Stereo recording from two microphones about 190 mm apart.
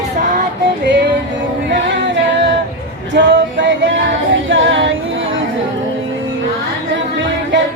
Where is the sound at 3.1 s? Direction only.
70° right (ahead or behind).